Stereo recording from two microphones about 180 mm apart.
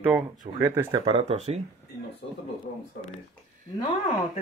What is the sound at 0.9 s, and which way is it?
Speech, 30° right (ahead or behind).